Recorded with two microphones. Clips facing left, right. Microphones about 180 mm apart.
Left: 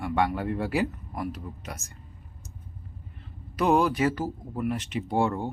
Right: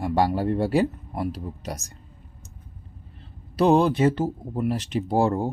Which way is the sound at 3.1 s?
30° right (ahead or behind).